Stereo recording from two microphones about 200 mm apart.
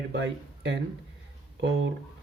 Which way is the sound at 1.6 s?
60° right (ahead or behind).